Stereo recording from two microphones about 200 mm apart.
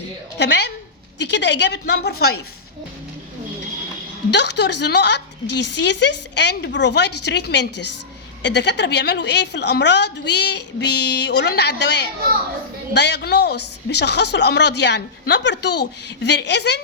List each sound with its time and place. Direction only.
1.2 s a woman's voice: 60° left (ahead or behind)
4.3 s a woman's voice: 60° left (ahead or behind)